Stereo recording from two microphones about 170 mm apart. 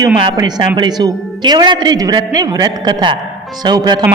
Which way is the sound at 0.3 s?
25° right (ahead or behind).